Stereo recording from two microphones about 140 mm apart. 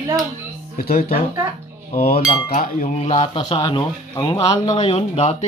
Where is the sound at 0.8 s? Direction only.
90° left.